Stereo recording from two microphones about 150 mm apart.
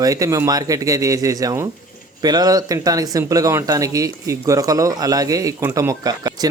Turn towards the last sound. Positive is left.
turn(degrees=-25)  # may be behind; listen again after turning